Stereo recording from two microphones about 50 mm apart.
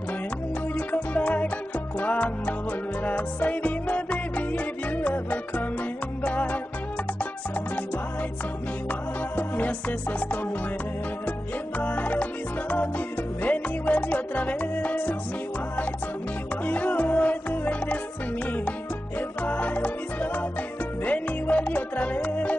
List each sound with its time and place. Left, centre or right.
0.7 s music: left
9.3 s music: left
11.8 s music: left
16.6 s music: left